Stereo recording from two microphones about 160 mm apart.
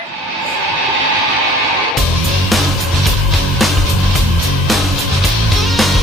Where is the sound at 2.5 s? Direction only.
Centre (ahead or behind).